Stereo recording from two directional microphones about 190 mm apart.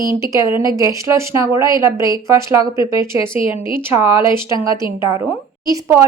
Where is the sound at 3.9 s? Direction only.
15° right (ahead or behind).